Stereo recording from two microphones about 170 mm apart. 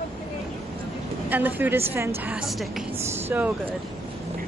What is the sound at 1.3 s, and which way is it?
A woman's voice, 10° right (ahead or behind).